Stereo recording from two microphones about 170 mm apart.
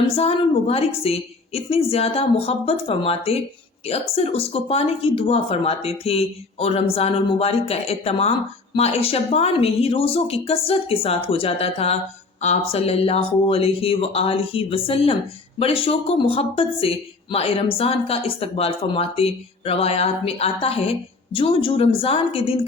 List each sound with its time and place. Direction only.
0.1 s speech: 35° left (ahead or behind)